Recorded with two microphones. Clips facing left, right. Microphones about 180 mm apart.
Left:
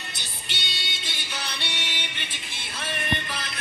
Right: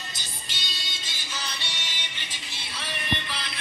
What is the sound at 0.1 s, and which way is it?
Music, 65° left (ahead or behind).